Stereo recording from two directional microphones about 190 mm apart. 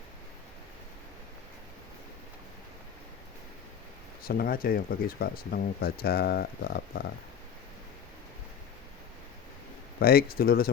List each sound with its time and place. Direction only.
4.2 s speech: 50° left (ahead or behind)
10.0 s speech: 55° left (ahead or behind)